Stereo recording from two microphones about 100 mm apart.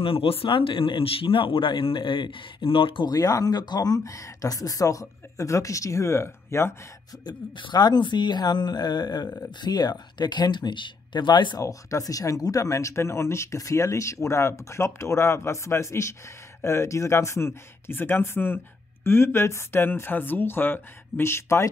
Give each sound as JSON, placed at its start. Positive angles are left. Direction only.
{"t": 0.0, "sound": "speech", "side_deg": 70}
{"t": 3.1, "sound": "speech", "side_deg": 40}
{"t": 7.2, "sound": "speech", "side_deg": 50}
{"t": 11.6, "sound": "speech", "side_deg": 35}